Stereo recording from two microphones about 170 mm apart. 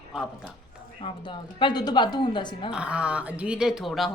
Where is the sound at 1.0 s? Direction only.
25° left (ahead or behind).